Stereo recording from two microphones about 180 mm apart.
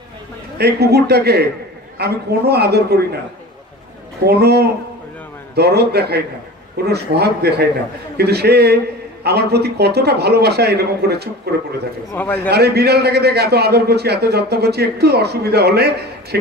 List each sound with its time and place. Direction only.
0.6 s a man's voice: 65° right (ahead or behind)
4.3 s a man's voice: 65° right (ahead or behind)
12.1 s a man's voice: 10° left (ahead or behind)
12.5 s a man's voice: 65° right (ahead or behind)